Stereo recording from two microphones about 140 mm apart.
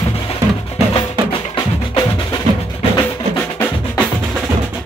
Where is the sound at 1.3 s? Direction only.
40° left (ahead or behind).